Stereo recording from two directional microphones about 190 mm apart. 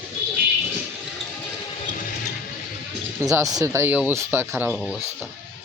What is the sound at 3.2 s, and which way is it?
Speech, 15° right (ahead or behind).